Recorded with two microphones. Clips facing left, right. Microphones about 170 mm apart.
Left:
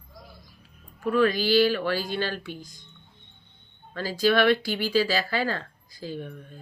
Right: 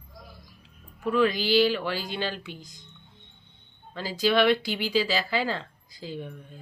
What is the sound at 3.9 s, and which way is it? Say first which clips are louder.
Speech: left 1 dB; 20° right (ahead or behind).